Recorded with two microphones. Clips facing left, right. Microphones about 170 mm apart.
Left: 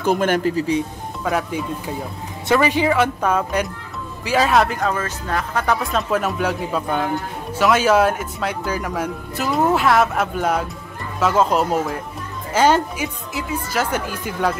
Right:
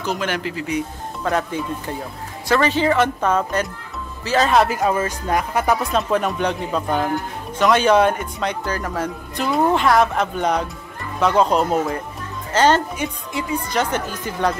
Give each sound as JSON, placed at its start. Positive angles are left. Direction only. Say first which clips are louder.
{"t": 0.0, "sound": "speech", "louder": "left 6 dB", "side_deg": 50}
{"t": 1.2, "sound": "a woman's voice", "louder": "even", "side_deg": 5}
{"t": 4.5, "sound": "speech", "louder": "right 1 dB", "side_deg": 0}
{"t": 4.7, "sound": "a woman's voice", "louder": "right 3 dB", "side_deg": -10}